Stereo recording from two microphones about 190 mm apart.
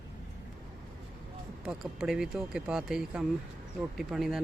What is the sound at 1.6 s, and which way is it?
Speech, 5° right (ahead or behind).